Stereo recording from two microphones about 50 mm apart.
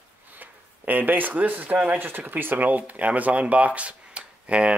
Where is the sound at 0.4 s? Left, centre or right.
Right.